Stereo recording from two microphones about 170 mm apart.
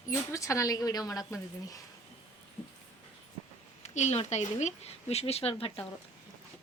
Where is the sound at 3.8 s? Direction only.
40° left (ahead or behind).